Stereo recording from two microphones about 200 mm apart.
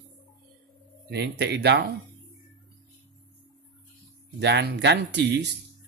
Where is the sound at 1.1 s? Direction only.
55° right (ahead or behind).